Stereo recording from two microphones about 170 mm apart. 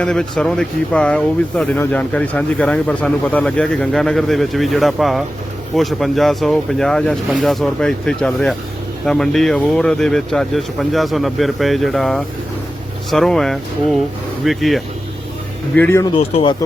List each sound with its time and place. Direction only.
0.0 s speech: 5° left (ahead or behind)
15.7 s speech: 10° left (ahead or behind)
16.1 s speech: 30° left (ahead or behind)